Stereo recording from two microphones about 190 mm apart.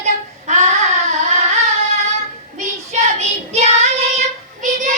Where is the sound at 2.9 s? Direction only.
35° right (ahead or behind).